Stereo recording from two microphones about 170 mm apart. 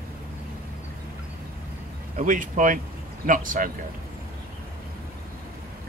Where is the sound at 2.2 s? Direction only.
50° right (ahead or behind).